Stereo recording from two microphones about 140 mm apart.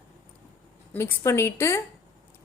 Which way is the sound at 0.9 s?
20° left (ahead or behind).